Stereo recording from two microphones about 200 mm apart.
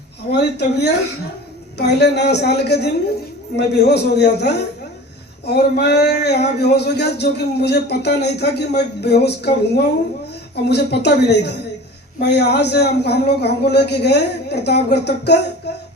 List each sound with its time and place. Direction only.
0.3 s speech: 55° left (ahead or behind)